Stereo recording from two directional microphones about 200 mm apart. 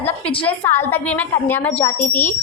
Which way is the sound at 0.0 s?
10° left (ahead or behind).